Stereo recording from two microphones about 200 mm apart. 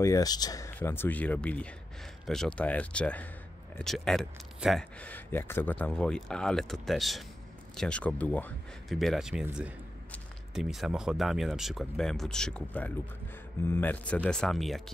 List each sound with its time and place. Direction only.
0.0 s speech: 15° left (ahead or behind); by 14.8 s centre (ahead or behind)